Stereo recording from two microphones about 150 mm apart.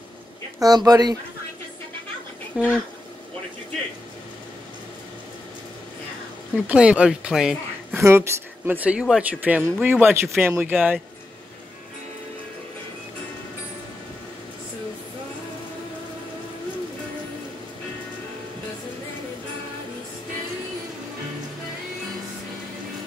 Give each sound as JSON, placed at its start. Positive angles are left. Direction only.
{"t": 0.6, "sound": "speech", "side_deg": -25}
{"t": 2.6, "sound": "speech", "side_deg": -10}
{"t": 6.5, "sound": "speech", "side_deg": -5}
{"t": 7.9, "sound": "speech", "side_deg": -15}
{"t": 10.4, "sound": "speech", "side_deg": -15}